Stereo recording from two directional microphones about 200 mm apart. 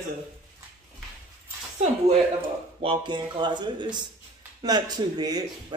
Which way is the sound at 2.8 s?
25° right (ahead or behind).